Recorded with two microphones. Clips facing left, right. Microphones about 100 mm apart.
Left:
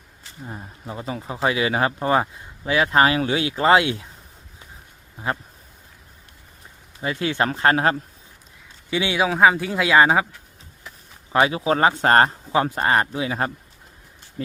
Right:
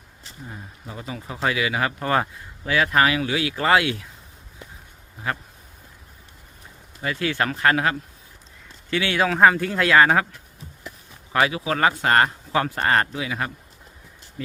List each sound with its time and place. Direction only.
0.4 s speech: 30° left (ahead or behind)
5.2 s speech: 25° left (ahead or behind)
7.0 s speech: 25° left (ahead or behind)
8.9 s speech: 15° left (ahead or behind)
11.3 s speech: 25° left (ahead or behind)
12.5 s speech: 20° left (ahead or behind)
13.2 s speech: 35° left (ahead or behind)